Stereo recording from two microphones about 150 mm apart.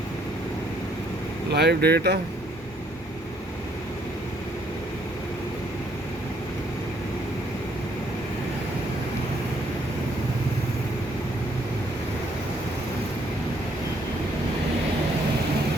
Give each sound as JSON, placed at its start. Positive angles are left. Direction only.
{"t": 1.5, "sound": "speech", "side_deg": -90}